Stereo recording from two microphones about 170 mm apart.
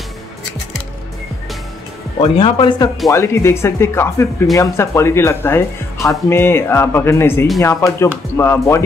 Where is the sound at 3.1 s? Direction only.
15° left (ahead or behind).